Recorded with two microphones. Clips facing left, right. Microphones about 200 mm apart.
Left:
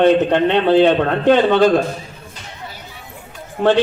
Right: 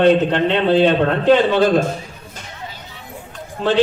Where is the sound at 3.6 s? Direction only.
60° left (ahead or behind).